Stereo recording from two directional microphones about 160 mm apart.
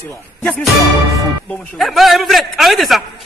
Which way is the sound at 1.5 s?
Centre (ahead or behind).